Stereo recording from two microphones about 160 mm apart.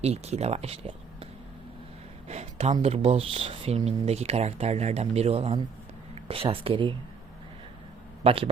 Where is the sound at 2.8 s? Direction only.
40° right (ahead or behind).